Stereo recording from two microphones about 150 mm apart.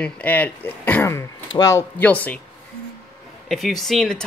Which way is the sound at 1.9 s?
10° left (ahead or behind).